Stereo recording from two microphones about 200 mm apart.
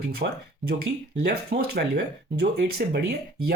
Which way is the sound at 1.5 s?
50° right (ahead or behind).